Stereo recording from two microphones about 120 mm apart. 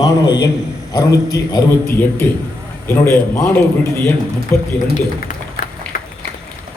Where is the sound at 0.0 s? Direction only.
35° left (ahead or behind).